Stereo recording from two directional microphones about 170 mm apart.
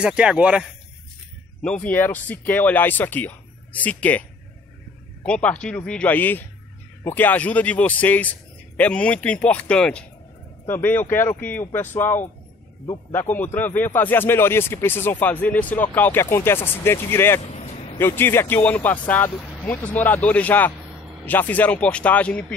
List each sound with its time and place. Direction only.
0.0 s speech: 5° right (ahead or behind)
1.6 s speech: 5° left (ahead or behind)
17.5 s vehicle: 40° left (ahead or behind)
17.9 s speech: 15° left (ahead or behind)